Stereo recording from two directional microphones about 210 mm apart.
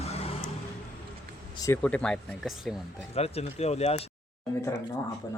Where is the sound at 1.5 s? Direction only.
15° left (ahead or behind).